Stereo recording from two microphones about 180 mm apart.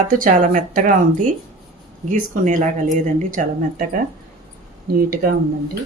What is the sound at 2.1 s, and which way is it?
Speech, 45° right (ahead or behind).